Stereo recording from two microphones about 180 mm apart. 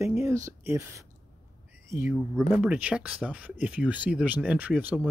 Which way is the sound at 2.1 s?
5° right (ahead or behind).